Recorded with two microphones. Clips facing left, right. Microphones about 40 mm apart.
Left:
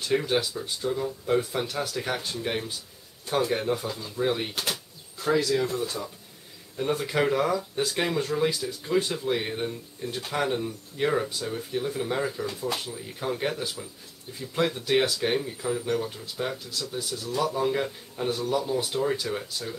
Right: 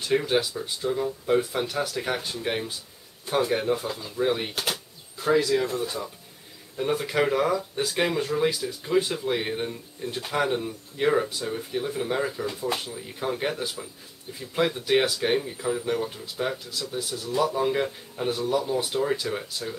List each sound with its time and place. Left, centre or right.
0.0 s speech: centre